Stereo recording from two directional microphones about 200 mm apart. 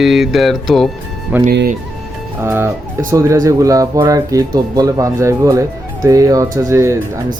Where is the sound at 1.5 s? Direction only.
55° right (ahead or behind).